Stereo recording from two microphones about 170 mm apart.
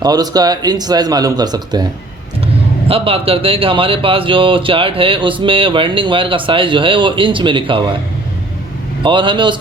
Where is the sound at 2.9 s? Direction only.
35° right (ahead or behind).